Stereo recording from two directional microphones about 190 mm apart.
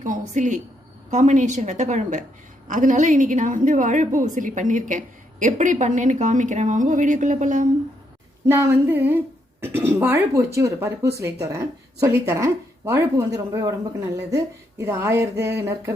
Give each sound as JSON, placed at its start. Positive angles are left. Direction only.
{"t": 0.0, "sound": "a woman's voice", "side_deg": -40}
{"t": 8.4, "sound": "speech", "side_deg": -15}